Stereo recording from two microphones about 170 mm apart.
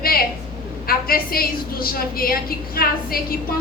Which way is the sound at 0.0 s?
60° left (ahead or behind).